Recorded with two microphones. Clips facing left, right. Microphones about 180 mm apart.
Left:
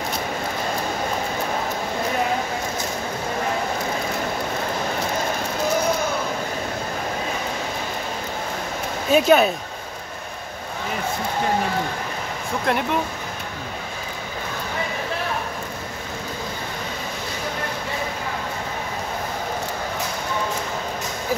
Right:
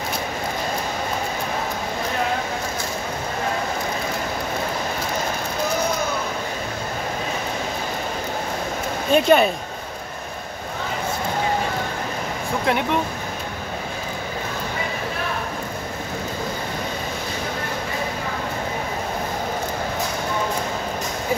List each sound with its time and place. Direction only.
9.1 s speech: centre (ahead or behind)
12.7 s speech: centre (ahead or behind)